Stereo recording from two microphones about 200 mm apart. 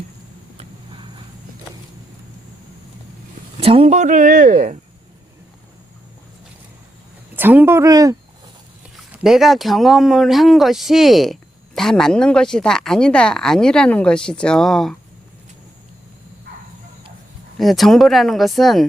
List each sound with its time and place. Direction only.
0.5 s a sound: 25° right (ahead or behind)
3.6 s speech: 30° right (ahead or behind)
7.3 s speech: 10° right (ahead or behind)
9.1 s speech: centre (ahead or behind)
17.6 s speech: centre (ahead or behind)